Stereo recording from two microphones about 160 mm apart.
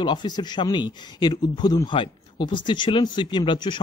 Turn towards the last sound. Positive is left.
turn(degrees=30)  # may be behind; listen again after turning